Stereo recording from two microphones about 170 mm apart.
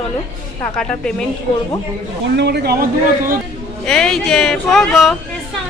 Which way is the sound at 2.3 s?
75° right (ahead or behind).